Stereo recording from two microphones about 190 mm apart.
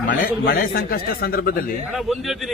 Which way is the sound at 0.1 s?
50° left (ahead or behind).